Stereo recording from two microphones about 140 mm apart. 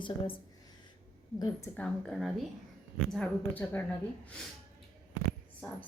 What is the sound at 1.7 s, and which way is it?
A woman's voice, 5° left (ahead or behind).